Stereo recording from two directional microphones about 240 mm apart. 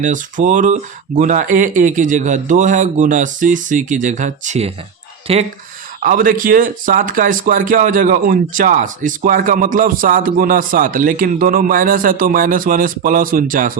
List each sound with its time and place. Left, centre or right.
0.0 s speech: right